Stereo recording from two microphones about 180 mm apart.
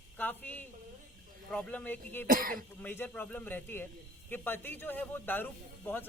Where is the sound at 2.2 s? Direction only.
50° right (ahead or behind).